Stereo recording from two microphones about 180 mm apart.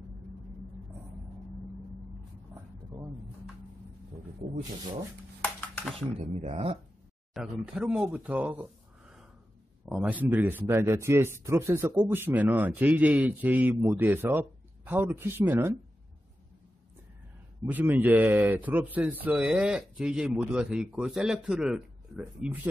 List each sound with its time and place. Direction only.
5.4 s a sound: 10° left (ahead or behind)
5.9 s speech: 30° right (ahead or behind)
7.3 s speech: 5° right (ahead or behind)
17.6 s speech: 10° right (ahead or behind)